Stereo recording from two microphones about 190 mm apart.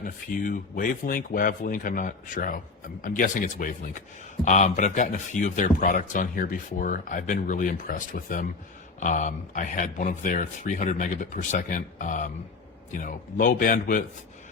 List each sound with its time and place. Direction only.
0.0 s a man's voice: 45° left (ahead or behind)